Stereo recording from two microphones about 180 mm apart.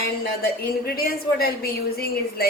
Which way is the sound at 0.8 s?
55° left (ahead or behind).